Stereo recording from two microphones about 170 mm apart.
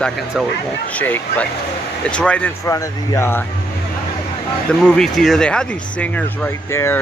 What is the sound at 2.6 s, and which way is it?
Speech, 20° left (ahead or behind).